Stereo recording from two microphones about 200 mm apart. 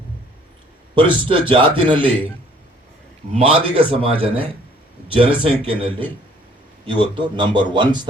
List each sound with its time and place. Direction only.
0.9 s a man's voice: 25° right (ahead or behind)
3.3 s a man's voice: 30° right (ahead or behind)